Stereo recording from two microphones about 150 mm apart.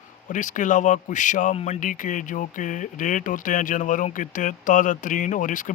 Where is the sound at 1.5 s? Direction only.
45° left (ahead or behind).